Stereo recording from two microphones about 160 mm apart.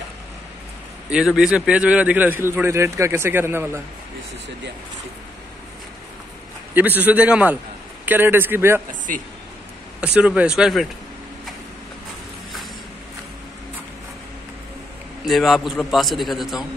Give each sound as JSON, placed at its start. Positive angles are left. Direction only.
{"t": 1.1, "sound": "a man's voice", "side_deg": -5}
{"t": 6.7, "sound": "a man's voice", "side_deg": -10}
{"t": 9.1, "sound": "speech", "side_deg": -55}
{"t": 9.9, "sound": "a man's voice", "side_deg": -5}
{"t": 15.2, "sound": "a man's voice", "side_deg": 0}